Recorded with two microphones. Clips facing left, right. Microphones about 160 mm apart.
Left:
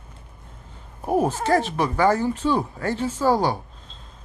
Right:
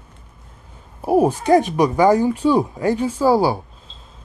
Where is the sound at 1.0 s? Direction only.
10° right (ahead or behind).